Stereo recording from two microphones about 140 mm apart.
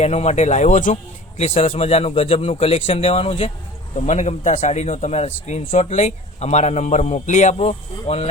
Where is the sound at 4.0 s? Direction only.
55° left (ahead or behind).